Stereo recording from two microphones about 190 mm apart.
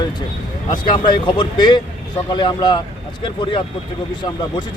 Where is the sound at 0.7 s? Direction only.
25° left (ahead or behind).